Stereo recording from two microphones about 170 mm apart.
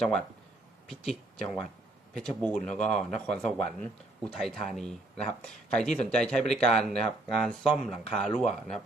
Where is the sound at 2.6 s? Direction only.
45° left (ahead or behind).